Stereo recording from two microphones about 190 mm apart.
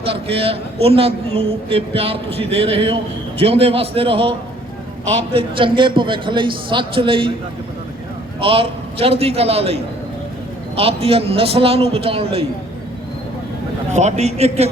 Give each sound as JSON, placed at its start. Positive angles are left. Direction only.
{"t": 0.0, "sound": "a man's voice", "side_deg": -30}
{"t": 8.4, "sound": "a man's voice", "side_deg": -30}
{"t": 13.9, "sound": "a man's voice", "side_deg": -35}